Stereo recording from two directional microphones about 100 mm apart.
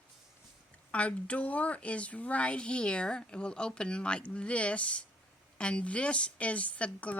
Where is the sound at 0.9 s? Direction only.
10° left (ahead or behind).